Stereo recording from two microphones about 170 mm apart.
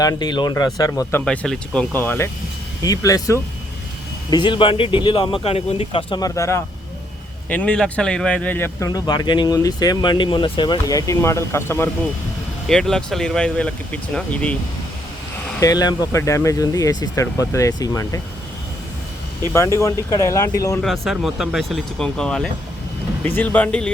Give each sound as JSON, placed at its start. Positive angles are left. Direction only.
{"t": 0.0, "sound": "speech", "side_deg": 25}
{"t": 1.2, "sound": "speech", "side_deg": 5}
{"t": 7.5, "sound": "speech", "side_deg": 5}
{"t": 8.9, "sound": "speech", "side_deg": 25}
{"t": 12.6, "sound": "speech", "side_deg": 5}
{"t": 15.6, "sound": "speech", "side_deg": 20}
{"t": 19.5, "sound": "speech", "side_deg": 15}
{"t": 20.8, "sound": "speech", "side_deg": 0}